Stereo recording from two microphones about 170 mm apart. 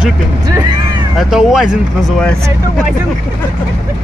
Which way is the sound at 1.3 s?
5° right (ahead or behind).